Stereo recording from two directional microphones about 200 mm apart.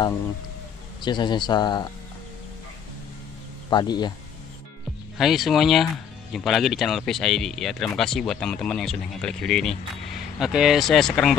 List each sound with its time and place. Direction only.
1.0 s speech: 20° left (ahead or behind)
3.7 s speech: 20° left (ahead or behind)
5.1 s speech: centre (ahead or behind)